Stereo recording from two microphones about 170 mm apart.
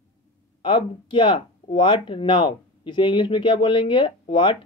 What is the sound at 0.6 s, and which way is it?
Speech, 30° left (ahead or behind).